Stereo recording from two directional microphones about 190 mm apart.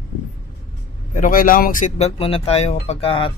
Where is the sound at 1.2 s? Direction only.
45° left (ahead or behind).